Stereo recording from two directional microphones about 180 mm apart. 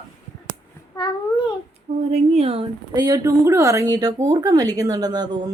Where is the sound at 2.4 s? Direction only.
35° right (ahead or behind).